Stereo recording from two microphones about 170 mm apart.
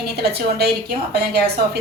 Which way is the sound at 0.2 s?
70° right (ahead or behind).